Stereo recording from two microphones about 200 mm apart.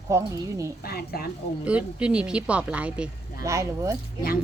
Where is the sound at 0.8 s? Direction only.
50° left (ahead or behind).